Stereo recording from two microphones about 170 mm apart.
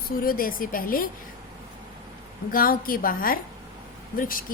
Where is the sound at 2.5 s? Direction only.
55° left (ahead or behind).